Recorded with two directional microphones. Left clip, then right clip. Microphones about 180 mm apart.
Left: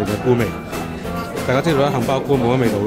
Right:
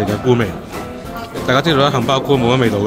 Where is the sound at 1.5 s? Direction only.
5° right (ahead or behind).